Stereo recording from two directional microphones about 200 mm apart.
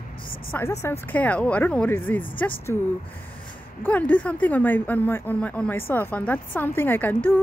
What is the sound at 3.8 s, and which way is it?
Speech, 5° left (ahead or behind).